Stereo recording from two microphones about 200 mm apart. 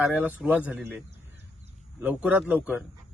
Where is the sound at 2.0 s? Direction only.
5° right (ahead or behind).